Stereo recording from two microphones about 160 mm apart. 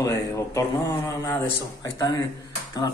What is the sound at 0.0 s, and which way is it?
A man's voice, 20° left (ahead or behind).